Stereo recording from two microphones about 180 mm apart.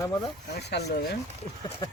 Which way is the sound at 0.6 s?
65° left (ahead or behind).